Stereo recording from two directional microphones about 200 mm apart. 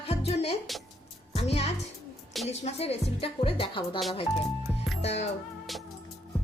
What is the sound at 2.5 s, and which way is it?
Speech, 30° left (ahead or behind).